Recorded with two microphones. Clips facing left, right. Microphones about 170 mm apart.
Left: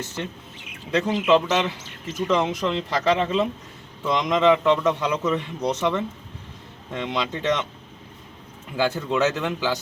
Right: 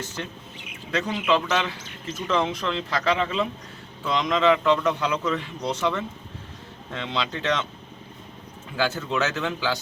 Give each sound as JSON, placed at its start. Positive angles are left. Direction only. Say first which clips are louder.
{"t": 0.9, "sound": "a man's voice", "louder": "left 4 dB", "side_deg": 20}
{"t": 8.7, "sound": "speech", "louder": "left 3 dB", "side_deg": 15}